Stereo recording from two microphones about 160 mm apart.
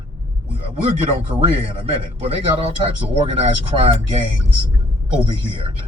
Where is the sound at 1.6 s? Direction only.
35° right (ahead or behind).